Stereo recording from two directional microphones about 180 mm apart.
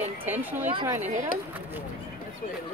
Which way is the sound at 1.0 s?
40° right (ahead or behind).